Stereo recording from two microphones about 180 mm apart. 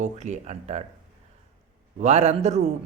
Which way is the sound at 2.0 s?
35° right (ahead or behind).